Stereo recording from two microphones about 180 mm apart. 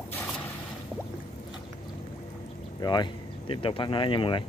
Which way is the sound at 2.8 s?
25° left (ahead or behind).